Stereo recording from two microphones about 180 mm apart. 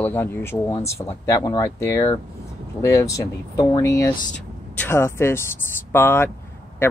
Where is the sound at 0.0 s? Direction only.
15° left (ahead or behind).